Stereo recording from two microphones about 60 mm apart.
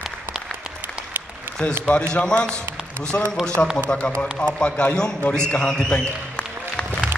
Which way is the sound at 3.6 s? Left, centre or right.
Left.